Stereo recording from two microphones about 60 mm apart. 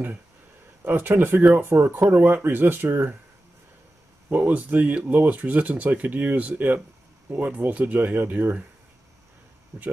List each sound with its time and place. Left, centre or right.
0.8 s speech: right
4.3 s speech: right
9.7 s speech: right